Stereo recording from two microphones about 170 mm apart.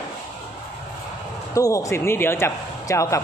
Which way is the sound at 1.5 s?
20° left (ahead or behind).